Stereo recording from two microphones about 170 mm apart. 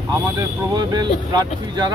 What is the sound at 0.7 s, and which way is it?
Speech, 25° right (ahead or behind).